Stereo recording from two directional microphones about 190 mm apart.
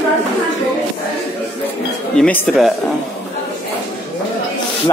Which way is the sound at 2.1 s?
5° left (ahead or behind).